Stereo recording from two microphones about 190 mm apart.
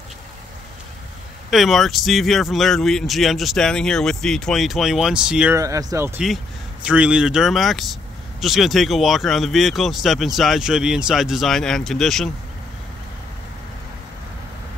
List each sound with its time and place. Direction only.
1.5 s speech: centre (ahead or behind)
5.6 s speech: 15° right (ahead or behind)
6.2 s speech: 5° right (ahead or behind)